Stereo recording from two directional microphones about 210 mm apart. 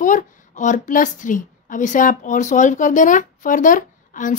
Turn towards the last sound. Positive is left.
turn(degrees=40)  # may be behind; listen again after turning